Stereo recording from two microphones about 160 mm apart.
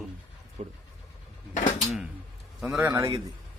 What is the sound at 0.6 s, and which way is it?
Speech, 45° right (ahead or behind).